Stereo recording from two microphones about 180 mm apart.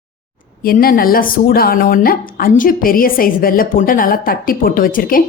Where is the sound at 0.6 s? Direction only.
55° left (ahead or behind).